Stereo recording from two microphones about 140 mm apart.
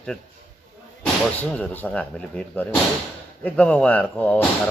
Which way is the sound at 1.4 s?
10° left (ahead or behind).